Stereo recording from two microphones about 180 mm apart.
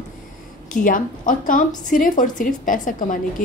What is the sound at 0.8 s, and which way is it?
A woman's voice, 50° left (ahead or behind).